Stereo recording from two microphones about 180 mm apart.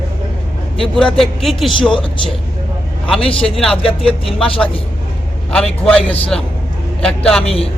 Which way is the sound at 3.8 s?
30° left (ahead or behind).